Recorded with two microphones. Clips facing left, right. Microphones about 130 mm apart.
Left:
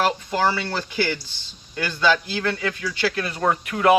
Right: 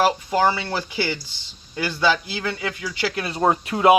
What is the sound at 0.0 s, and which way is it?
Speech, 15° right (ahead or behind).